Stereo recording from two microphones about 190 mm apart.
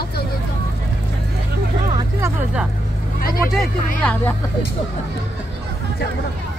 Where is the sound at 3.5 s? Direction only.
5° left (ahead or behind).